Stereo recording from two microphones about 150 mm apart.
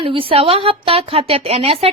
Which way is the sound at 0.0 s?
35° right (ahead or behind).